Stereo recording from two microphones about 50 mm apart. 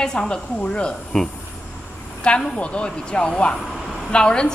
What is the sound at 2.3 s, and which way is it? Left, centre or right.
A woman's voice, left.